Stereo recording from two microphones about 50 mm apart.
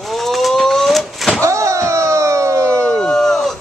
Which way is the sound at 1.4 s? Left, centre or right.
Right.